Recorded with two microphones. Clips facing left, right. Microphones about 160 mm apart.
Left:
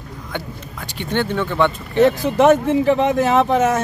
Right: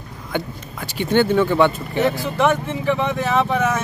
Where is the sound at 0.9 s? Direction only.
5° right (ahead or behind).